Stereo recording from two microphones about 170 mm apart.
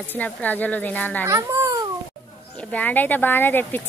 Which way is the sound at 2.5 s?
10° left (ahead or behind).